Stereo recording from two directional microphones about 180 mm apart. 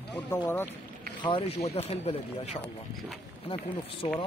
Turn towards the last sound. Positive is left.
turn(degrees=30)  # may be behind; listen again after turning